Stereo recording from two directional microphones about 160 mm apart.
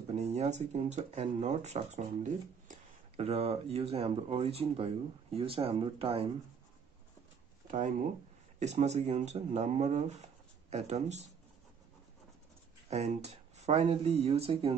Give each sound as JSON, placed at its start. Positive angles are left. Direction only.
{"t": 0.1, "sound": "speech", "side_deg": -45}
{"t": 7.6, "sound": "speech", "side_deg": -50}
{"t": 12.9, "sound": "speech", "side_deg": -45}